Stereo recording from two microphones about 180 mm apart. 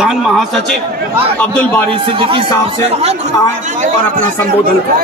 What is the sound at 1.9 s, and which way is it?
Speech, 30° right (ahead or behind).